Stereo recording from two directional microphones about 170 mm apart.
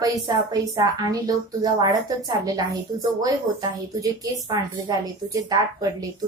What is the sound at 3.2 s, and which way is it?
A woman's voice, 20° right (ahead or behind).